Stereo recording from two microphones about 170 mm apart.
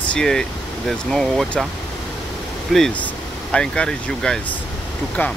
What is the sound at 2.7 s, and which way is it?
Speech, 5° left (ahead or behind).